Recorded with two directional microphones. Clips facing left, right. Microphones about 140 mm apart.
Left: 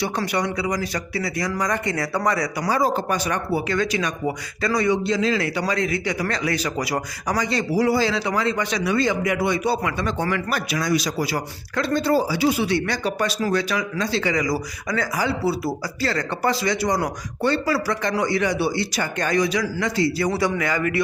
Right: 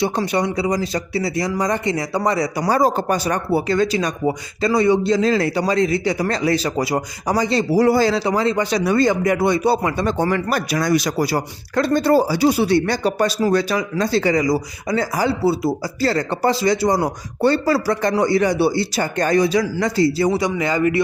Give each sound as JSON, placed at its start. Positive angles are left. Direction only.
{"t": 0.0, "sound": "speech", "side_deg": -25}
{"t": 2.6, "sound": "speech", "side_deg": -40}
{"t": 7.8, "sound": "speech", "side_deg": -45}
{"t": 8.3, "sound": "speech", "side_deg": -30}
{"t": 11.3, "sound": "speech", "side_deg": -40}
{"t": 14.4, "sound": "speech", "side_deg": -25}
{"t": 20.2, "sound": "speech", "side_deg": -20}